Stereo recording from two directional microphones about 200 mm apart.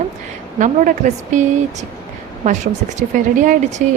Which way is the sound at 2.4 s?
40° right (ahead or behind).